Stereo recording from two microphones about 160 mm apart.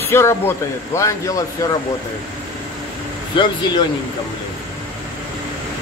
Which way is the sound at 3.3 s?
30° left (ahead or behind).